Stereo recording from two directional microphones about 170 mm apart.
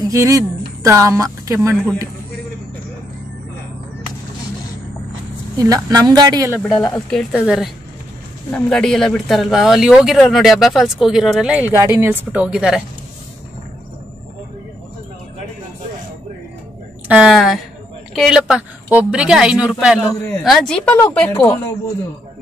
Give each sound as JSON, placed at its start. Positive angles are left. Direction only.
{"t": 0.1, "sound": "speech", "side_deg": -20}
{"t": 5.6, "sound": "speech", "side_deg": -20}
{"t": 6.9, "sound": "speech", "side_deg": 5}
{"t": 17.1, "sound": "speech", "side_deg": -5}